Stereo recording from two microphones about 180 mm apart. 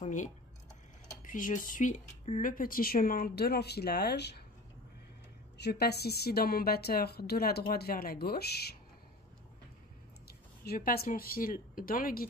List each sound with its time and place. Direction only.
0.0 s speech: 45° left (ahead or behind); by 4.4 s 65° left (ahead or behind)
5.6 s speech: 65° left (ahead or behind)
10.2 s speech: 60° left (ahead or behind)